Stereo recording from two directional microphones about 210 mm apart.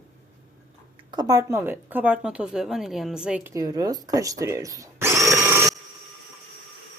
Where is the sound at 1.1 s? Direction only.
20° right (ahead or behind).